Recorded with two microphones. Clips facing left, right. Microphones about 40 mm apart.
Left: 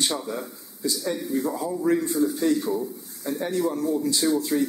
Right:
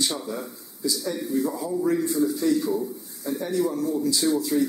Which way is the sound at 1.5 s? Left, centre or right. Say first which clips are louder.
Right 1 dB; centre.